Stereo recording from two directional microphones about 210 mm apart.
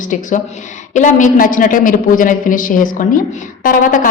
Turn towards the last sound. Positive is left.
turn(degrees=40)  # may be behind; listen again after turning